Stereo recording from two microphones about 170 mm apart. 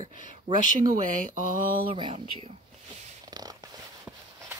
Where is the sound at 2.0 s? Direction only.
30° right (ahead or behind).